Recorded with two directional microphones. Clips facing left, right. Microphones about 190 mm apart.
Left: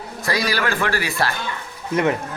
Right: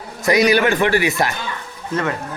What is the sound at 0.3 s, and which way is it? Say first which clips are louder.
A man's voice: right 8 dB; 20° right (ahead or behind).